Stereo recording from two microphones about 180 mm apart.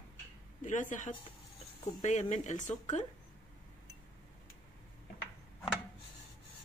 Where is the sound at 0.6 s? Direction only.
45° left (ahead or behind).